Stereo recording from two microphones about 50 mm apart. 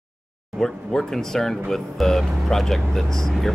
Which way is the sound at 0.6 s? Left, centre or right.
Centre.